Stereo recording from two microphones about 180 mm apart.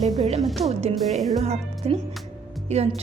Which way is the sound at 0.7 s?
35° right (ahead or behind).